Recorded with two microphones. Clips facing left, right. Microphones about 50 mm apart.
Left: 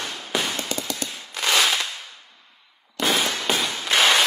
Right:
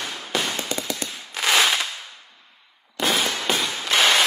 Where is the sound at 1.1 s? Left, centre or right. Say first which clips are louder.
Right 1 dB; centre.